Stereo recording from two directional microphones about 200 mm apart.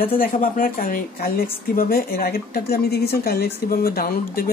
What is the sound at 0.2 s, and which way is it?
A woman's voice, 45° left (ahead or behind).